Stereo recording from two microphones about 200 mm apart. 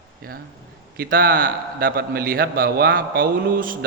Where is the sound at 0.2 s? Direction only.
45° right (ahead or behind).